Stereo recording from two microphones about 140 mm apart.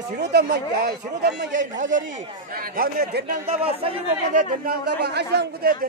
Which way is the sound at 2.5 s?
90° right.